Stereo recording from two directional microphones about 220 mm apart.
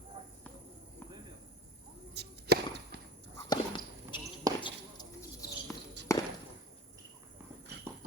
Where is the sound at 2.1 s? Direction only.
50° right (ahead or behind).